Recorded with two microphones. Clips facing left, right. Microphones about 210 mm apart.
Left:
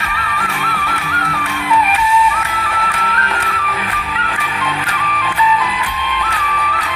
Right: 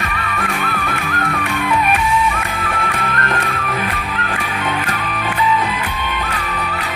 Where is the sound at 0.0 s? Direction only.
50° right (ahead or behind).